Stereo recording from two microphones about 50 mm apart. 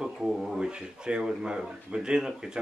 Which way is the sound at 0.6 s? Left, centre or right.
Centre.